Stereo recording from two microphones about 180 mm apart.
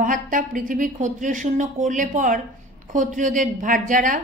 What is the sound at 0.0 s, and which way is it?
A woman's voice, 45° right (ahead or behind).